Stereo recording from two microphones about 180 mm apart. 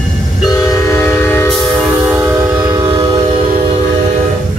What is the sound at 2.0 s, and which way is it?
Train, 15° right (ahead or behind).